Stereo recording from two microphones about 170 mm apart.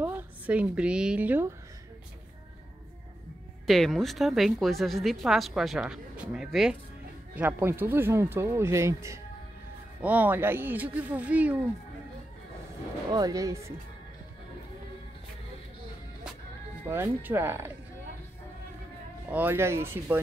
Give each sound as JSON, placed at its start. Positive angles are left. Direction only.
{"t": 0.0, "sound": "a woman's voice", "side_deg": -10}
{"t": 3.6, "sound": "a woman's voice", "side_deg": 0}
{"t": 13.1, "sound": "speech", "side_deg": -20}
{"t": 16.9, "sound": "speech", "side_deg": -15}
{"t": 19.3, "sound": "speech", "side_deg": -15}